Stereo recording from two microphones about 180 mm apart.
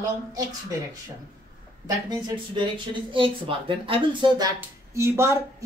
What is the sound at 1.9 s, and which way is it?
Speech, 25° right (ahead or behind).